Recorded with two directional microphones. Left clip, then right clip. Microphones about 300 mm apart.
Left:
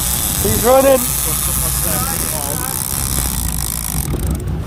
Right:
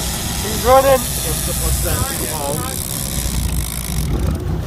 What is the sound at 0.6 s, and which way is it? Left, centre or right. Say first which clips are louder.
Speech: even; left.